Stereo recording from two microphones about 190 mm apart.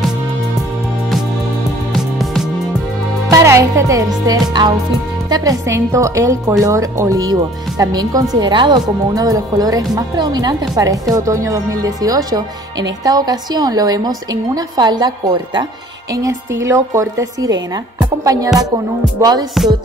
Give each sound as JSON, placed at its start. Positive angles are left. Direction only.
{"t": 3.3, "sound": "a woman's voice", "side_deg": -15}